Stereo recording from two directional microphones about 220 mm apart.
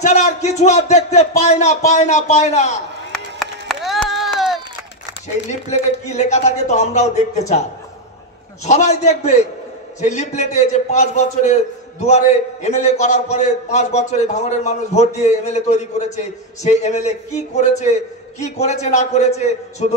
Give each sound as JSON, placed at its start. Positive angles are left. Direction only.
{"t": 0.0, "sound": "a man's voice", "side_deg": 30}
{"t": 3.1, "sound": "run", "side_deg": 0}
{"t": 5.7, "sound": "a man's voice", "side_deg": 30}
{"t": 8.6, "sound": "a man's voice", "side_deg": 30}